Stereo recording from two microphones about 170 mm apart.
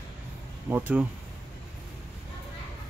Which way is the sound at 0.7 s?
10° right (ahead or behind).